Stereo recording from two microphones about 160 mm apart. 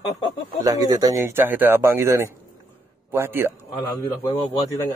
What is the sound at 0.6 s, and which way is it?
Speech, 25° right (ahead or behind).